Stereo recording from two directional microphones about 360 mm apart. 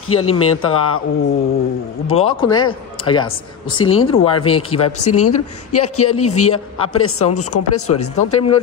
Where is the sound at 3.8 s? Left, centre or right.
Left.